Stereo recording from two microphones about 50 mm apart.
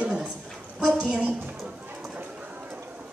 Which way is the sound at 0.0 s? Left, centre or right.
Right.